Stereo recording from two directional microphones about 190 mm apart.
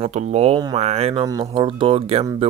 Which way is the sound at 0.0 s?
35° right (ahead or behind).